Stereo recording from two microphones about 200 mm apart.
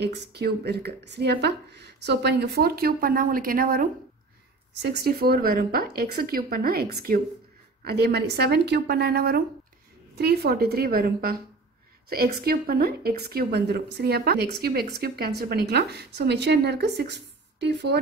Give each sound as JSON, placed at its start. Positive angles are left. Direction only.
{"t": 0.0, "sound": "a woman's voice", "side_deg": -55}